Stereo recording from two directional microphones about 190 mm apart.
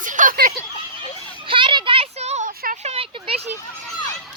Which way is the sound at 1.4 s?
25° right (ahead or behind).